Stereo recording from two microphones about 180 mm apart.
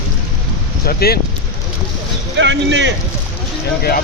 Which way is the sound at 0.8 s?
55° left (ahead or behind).